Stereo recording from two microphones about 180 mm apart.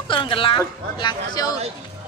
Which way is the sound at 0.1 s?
25° left (ahead or behind).